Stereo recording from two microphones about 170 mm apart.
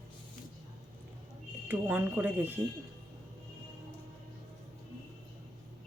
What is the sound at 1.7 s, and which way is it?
Speech, 10° right (ahead or behind).